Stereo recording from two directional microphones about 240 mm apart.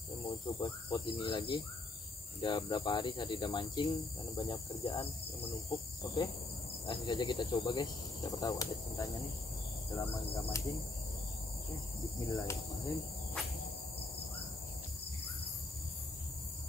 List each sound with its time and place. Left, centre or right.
0.2 s speech: centre
12.0 s speech: centre